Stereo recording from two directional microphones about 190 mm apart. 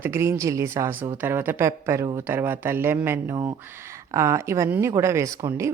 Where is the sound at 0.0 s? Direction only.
15° right (ahead or behind).